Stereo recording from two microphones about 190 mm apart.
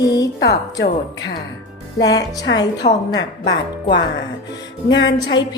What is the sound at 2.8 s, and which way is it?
Speech, 40° left (ahead or behind).